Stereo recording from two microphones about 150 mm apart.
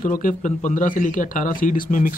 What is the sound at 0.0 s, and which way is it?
A man's voice, 60° left (ahead or behind).